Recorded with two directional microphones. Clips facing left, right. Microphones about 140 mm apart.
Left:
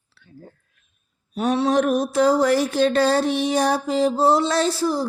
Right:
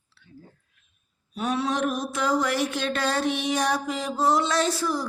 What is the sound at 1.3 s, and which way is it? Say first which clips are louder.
Mantra: left 6 dB; 45° left (ahead or behind).